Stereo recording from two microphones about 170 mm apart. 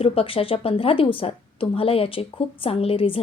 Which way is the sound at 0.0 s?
35° left (ahead or behind).